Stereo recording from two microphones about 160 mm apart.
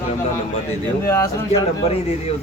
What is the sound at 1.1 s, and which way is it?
Speech, 15° left (ahead or behind).